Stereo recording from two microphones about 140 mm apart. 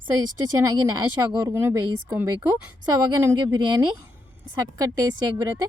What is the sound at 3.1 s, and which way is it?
Speech, 30° right (ahead or behind).